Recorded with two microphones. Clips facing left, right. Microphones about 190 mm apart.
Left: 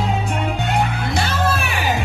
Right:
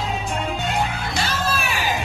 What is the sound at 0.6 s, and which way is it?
Music, 60° left (ahead or behind).